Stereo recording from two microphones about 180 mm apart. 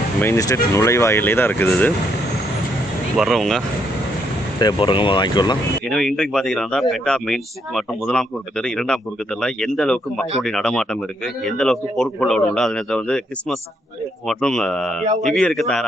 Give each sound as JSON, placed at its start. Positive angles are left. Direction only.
{"t": 0.2, "sound": "speech", "side_deg": 15}
{"t": 3.2, "sound": "speech", "side_deg": 0}
{"t": 4.6, "sound": "speech", "side_deg": 25}
{"t": 5.9, "sound": "speech", "side_deg": 0}
{"t": 14.3, "sound": "speech", "side_deg": 0}